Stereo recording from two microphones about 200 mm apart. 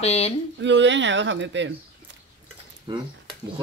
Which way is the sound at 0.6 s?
65° right (ahead or behind).